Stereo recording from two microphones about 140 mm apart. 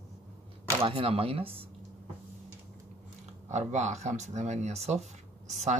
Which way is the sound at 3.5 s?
55° right (ahead or behind).